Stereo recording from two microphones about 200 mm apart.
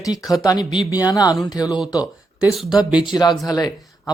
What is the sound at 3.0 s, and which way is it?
Speech, 20° left (ahead or behind).